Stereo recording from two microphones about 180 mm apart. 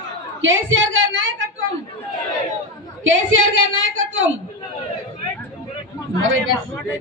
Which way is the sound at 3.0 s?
90° right.